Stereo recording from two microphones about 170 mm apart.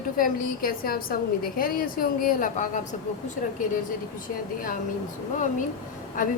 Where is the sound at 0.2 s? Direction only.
60° left (ahead or behind).